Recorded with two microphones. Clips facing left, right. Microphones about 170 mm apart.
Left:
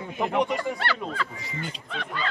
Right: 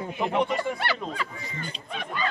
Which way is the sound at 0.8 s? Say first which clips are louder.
Even; 15° right (ahead or behind).